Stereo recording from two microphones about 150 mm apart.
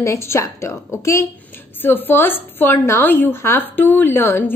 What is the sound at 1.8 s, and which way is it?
A woman's voice, 15° left (ahead or behind).